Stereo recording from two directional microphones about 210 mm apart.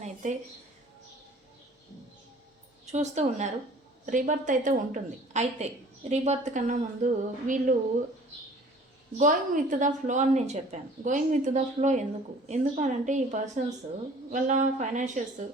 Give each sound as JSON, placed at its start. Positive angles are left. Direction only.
{"t": 0.0, "sound": "a sound", "side_deg": -35}
{"t": 2.9, "sound": "a woman's voice", "side_deg": -35}
{"t": 9.1, "sound": "a woman's voice", "side_deg": -40}